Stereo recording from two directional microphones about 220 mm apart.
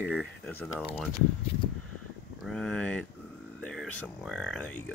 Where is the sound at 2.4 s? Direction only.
Centre (ahead or behind).